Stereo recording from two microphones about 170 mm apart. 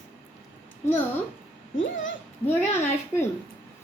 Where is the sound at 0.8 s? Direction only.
15° left (ahead or behind).